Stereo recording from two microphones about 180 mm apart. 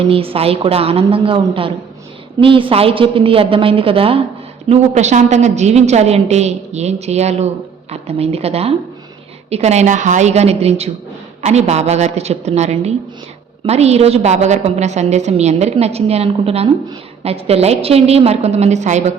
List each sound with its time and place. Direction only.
0.1 s a woman's voice: 30° right (ahead or behind)